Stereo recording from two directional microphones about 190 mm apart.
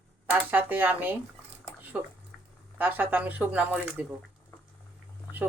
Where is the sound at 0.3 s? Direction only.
10° right (ahead or behind).